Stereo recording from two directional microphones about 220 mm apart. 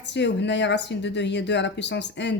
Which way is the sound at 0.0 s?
50° left (ahead or behind).